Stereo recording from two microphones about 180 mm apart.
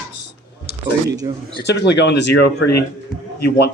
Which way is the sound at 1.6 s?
70° left (ahead or behind).